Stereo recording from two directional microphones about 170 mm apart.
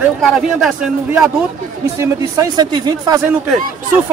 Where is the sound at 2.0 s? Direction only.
20° right (ahead or behind).